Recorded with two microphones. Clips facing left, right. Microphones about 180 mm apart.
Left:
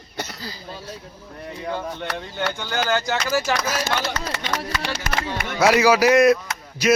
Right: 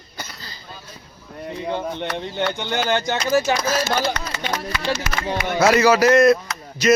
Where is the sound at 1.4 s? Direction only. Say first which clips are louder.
Right 3 dB; 20° right (ahead or behind).